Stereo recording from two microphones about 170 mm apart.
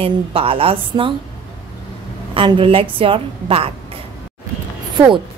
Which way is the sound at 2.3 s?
30° right (ahead or behind).